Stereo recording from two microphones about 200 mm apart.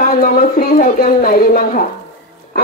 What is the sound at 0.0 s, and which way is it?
Speech, 40° left (ahead or behind).